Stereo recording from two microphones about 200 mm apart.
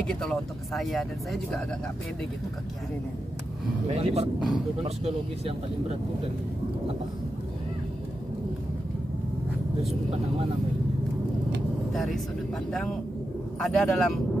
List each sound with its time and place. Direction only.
0.0 s speech: 5° left (ahead or behind)
3.9 s speech: 30° right (ahead or behind)
11.9 s speech: centre (ahead or behind)
13.6 s speech: centre (ahead or behind)